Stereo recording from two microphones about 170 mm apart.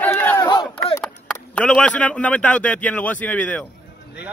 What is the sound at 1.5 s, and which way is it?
Speech, 5° left (ahead or behind).